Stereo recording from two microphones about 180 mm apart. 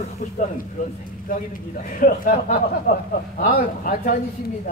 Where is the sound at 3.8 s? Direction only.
50° left (ahead or behind).